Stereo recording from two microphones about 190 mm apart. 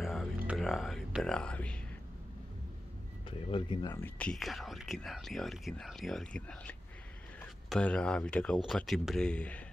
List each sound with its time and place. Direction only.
0.0 s music: centre (ahead or behind)
0.5 s speech: centre (ahead or behind)
3.3 s speech: 25° left (ahead or behind)
4.0 s speech: 5° left (ahead or behind)